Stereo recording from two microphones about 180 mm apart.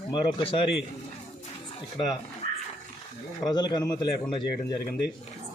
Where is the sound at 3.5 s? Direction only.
20° left (ahead or behind).